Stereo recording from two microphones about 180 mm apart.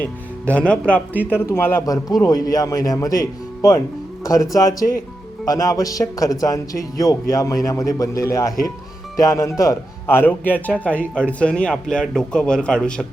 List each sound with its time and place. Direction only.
0.5 s a man's voice: 5° left (ahead or behind)
4.2 s music: 20° left (ahead or behind)
4.5 s a man's voice: 20° left (ahead or behind)